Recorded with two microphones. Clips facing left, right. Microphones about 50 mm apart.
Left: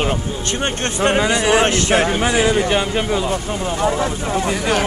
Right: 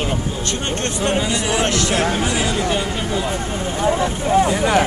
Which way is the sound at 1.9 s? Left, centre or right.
Left.